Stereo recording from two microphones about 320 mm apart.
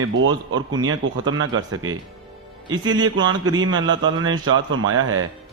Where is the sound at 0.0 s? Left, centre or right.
Right.